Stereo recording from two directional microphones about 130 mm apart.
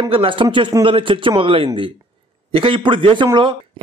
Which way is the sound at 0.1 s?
40° right (ahead or behind).